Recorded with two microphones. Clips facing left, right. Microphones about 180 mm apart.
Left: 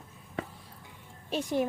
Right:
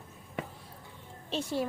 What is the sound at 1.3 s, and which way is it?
Speech, 15° left (ahead or behind).